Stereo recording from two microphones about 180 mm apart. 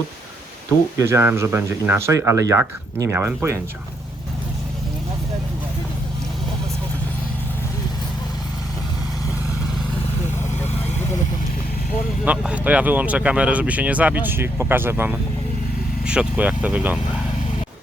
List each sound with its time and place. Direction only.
0.9 s speech: 15° right (ahead or behind)
12.2 s speech: 5° right (ahead or behind)